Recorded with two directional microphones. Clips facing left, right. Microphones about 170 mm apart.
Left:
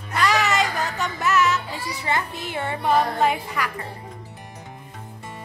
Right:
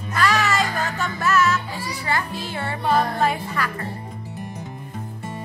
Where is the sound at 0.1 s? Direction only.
20° left (ahead or behind).